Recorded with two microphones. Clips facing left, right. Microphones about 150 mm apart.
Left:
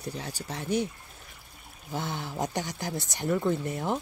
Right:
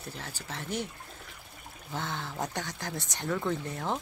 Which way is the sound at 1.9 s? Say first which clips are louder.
Left 3 dB; 15° left (ahead or behind).